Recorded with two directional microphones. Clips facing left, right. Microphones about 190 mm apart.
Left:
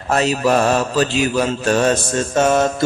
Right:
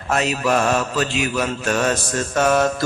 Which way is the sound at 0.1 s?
35° left (ahead or behind).